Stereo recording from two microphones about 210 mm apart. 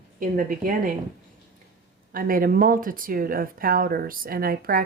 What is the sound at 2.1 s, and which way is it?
Speech, 45° right (ahead or behind).